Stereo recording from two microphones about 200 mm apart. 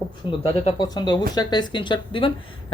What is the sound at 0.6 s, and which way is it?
A woman's voice, 20° left (ahead or behind).